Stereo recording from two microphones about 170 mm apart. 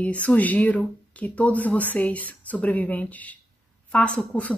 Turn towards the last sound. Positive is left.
turn(degrees=5)  # may be behind; listen again after turning